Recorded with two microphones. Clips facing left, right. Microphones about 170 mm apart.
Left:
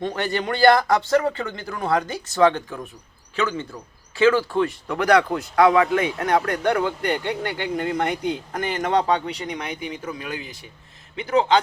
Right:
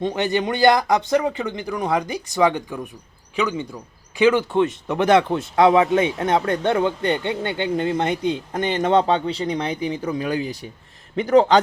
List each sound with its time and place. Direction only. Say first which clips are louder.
0.0 s speech: right 3 dB; 20° right (ahead or behind); by 11.6 s 45° right (ahead or behind)